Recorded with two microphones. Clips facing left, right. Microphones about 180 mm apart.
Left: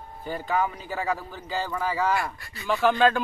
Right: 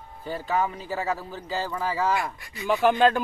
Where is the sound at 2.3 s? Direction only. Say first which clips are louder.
Right 2 dB; 20° right (ahead or behind).